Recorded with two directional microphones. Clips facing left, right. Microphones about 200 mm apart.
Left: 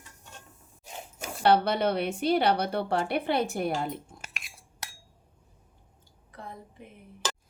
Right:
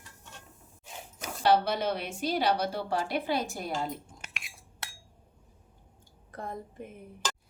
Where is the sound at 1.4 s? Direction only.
60° left (ahead or behind).